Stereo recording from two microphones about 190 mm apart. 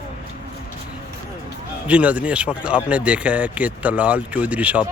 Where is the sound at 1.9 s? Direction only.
5° right (ahead or behind).